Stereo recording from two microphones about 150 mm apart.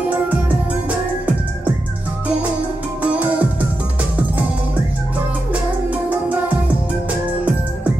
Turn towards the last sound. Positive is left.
turn(degrees=-10)  # may be behind; listen again after turning